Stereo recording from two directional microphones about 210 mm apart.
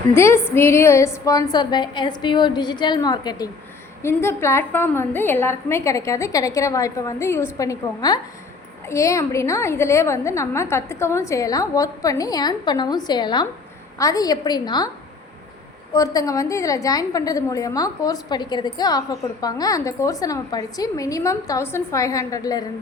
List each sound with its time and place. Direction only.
0.1 s a woman's voice: 10° left (ahead or behind)
15.9 s a woman's voice: 15° left (ahead or behind)